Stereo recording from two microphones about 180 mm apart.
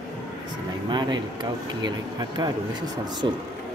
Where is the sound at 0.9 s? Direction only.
25° right (ahead or behind).